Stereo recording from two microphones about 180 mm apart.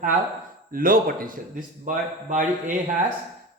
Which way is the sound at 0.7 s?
50° right (ahead or behind).